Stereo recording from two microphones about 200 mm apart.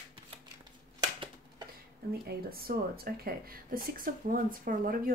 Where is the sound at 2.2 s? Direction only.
50° right (ahead or behind).